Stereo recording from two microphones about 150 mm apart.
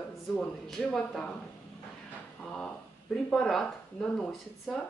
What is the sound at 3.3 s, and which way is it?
Speech, 5° left (ahead or behind).